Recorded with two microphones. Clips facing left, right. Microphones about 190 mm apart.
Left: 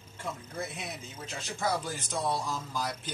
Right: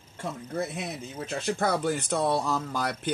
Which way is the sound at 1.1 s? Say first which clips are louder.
Right 10 dB; 60° right (ahead or behind).